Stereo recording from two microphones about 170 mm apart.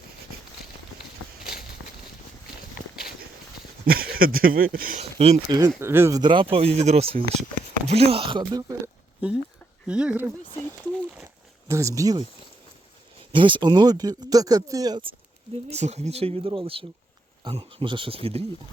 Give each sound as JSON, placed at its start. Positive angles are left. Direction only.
{"t": 2.8, "sound": "walk", "side_deg": 55}
{"t": 3.8, "sound": "speech", "side_deg": -60}
{"t": 4.9, "sound": "speech", "side_deg": -35}
{"t": 5.5, "sound": "speech", "side_deg": -20}
{"t": 9.8, "sound": "speech", "side_deg": -5}
{"t": 11.7, "sound": "speech", "side_deg": -20}
{"t": 13.3, "sound": "speech", "side_deg": -30}
{"t": 15.5, "sound": "speech", "side_deg": -40}